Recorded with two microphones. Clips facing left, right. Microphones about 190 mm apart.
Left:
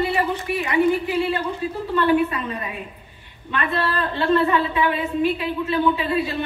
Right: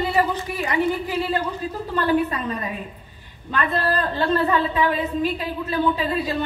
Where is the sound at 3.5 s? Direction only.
40° right (ahead or behind).